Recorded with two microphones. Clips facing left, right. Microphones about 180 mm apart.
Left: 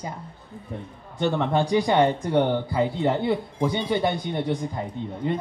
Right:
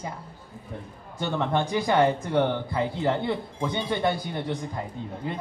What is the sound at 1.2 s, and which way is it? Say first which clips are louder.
Speech: left 3 dB; centre (ahead or behind).